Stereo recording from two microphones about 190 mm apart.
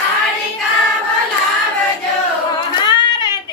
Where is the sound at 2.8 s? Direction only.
25° left (ahead or behind).